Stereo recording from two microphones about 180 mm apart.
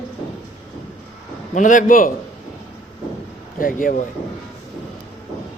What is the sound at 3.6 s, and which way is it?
Speech, 50° left (ahead or behind).